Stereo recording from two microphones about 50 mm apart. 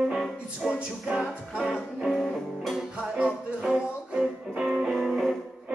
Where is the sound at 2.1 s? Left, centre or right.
Centre.